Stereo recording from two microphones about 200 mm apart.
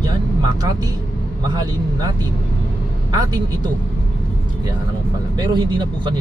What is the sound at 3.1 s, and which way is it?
Speech, 20° right (ahead or behind).